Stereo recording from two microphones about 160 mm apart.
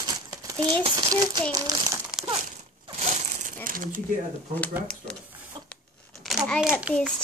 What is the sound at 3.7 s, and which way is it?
Speech, 60° right (ahead or behind).